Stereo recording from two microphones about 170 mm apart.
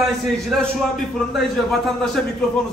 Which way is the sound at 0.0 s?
Centre (ahead or behind).